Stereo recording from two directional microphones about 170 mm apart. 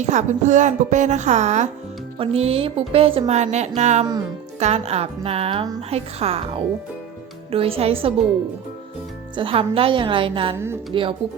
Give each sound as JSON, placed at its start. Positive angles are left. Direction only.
{"t": 0.0, "sound": "a woman's voice", "side_deg": -45}
{"t": 9.3, "sound": "speech", "side_deg": -30}